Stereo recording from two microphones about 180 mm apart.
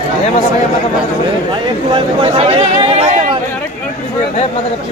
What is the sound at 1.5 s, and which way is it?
Speech, 30° right (ahead or behind).